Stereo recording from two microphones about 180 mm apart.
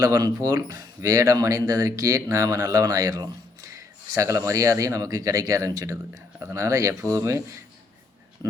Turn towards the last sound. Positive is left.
turn(degrees=-15)  # may be behind; listen again after turning